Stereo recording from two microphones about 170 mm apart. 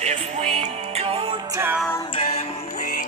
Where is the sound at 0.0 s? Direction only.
40° right (ahead or behind).